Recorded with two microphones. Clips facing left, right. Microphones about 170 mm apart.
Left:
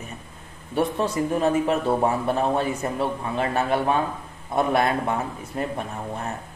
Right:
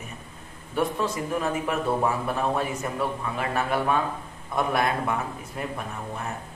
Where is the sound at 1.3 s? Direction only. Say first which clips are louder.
Left 5 dB; 30° left (ahead or behind).